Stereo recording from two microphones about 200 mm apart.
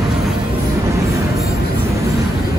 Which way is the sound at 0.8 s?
15° right (ahead or behind).